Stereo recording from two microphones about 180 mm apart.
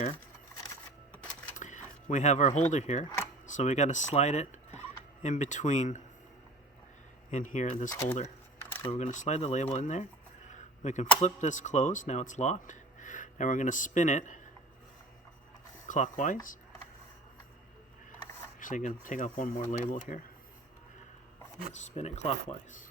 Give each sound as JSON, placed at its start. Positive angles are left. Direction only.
{"t": 1.5, "sound": "a sound", "side_deg": 45}
{"t": 2.0, "sound": "speech", "side_deg": 40}
{"t": 7.3, "sound": "speech", "side_deg": 45}
{"t": 8.9, "sound": "speech", "side_deg": 40}
{"t": 10.5, "sound": "a sound", "side_deg": 40}
{"t": 11.2, "sound": "speech", "side_deg": 40}
{"t": 15.9, "sound": "speech", "side_deg": 45}
{"t": 18.6, "sound": "speech", "side_deg": 45}
{"t": 21.7, "sound": "speech", "side_deg": 40}